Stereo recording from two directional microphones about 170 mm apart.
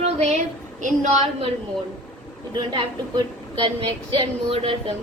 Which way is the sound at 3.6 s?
30° right (ahead or behind).